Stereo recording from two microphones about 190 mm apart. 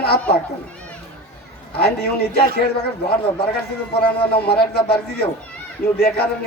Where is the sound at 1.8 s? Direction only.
55° left (ahead or behind).